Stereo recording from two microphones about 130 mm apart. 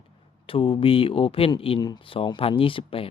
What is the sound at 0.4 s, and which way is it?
Speech, 45° left (ahead or behind).